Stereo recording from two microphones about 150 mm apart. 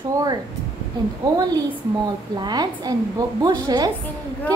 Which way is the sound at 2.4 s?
25° right (ahead or behind).